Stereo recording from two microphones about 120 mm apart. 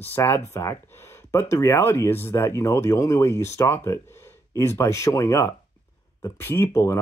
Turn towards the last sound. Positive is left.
turn(degrees=20)  # may be behind; listen again after turning